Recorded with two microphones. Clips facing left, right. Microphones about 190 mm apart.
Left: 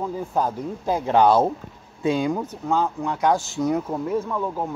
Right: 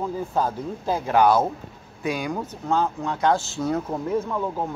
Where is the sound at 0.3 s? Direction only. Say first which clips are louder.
Left 1 dB; 15° left (ahead or behind).